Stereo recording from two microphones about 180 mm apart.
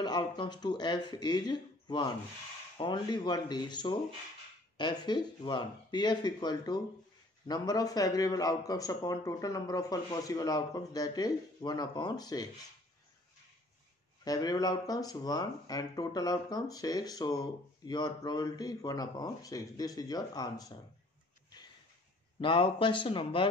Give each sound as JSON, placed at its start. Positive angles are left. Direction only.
{"t": 0.0, "sound": "speech", "side_deg": 25}
{"t": 14.2, "sound": "speech", "side_deg": 20}
{"t": 22.4, "sound": "speech", "side_deg": 30}